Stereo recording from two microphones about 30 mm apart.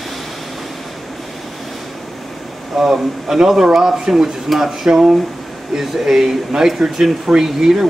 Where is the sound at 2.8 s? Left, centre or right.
Centre.